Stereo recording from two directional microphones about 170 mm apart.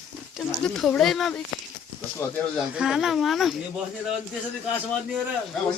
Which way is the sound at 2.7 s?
5° right (ahead or behind).